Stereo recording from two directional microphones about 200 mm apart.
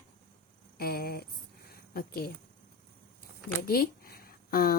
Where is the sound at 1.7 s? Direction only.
50° left (ahead or behind).